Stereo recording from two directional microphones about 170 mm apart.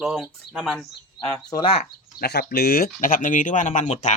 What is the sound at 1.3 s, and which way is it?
Speech, 25° left (ahead or behind).